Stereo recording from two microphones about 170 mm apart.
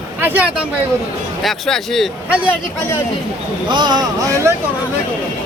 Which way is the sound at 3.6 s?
25° right (ahead or behind).